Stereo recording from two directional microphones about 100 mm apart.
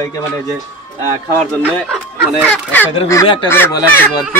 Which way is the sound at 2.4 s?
15° left (ahead or behind).